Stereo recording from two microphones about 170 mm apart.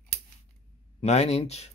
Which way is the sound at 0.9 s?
40° left (ahead or behind).